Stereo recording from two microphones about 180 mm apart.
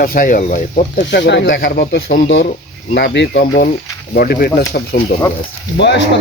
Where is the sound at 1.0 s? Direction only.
75° left (ahead or behind).